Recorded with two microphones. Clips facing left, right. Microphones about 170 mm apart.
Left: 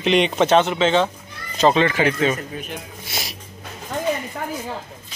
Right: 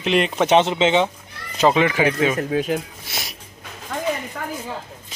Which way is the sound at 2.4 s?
85° right.